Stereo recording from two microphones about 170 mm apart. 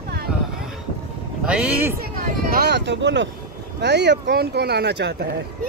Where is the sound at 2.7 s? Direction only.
90° right.